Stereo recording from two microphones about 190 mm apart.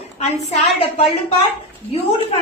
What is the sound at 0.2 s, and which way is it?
Speech, 35° left (ahead or behind).